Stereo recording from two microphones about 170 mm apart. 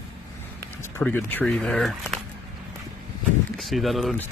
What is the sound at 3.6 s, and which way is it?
Speech, centre (ahead or behind).